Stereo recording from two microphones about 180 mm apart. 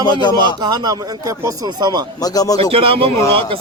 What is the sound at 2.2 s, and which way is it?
Speech, 20° left (ahead or behind).